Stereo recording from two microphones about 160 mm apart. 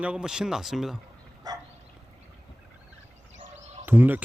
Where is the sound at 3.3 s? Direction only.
50° right (ahead or behind).